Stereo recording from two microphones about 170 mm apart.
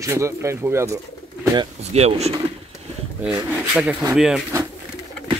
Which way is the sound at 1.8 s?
40° right (ahead or behind).